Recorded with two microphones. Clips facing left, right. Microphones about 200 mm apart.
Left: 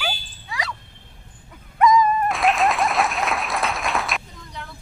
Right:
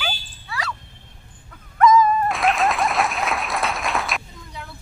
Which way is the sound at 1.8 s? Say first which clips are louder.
Right 2 dB; 15° left (ahead or behind).